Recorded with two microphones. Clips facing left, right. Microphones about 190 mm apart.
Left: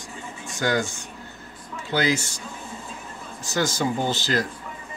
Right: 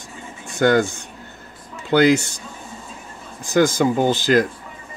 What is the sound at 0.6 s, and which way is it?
Speech, 60° right (ahead or behind).